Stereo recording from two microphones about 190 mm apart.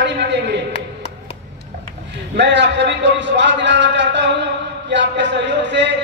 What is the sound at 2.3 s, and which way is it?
A man's voice, 65° right (ahead or behind).